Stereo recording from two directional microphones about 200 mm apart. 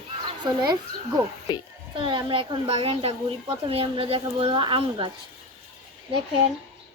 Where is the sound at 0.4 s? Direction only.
20° right (ahead or behind).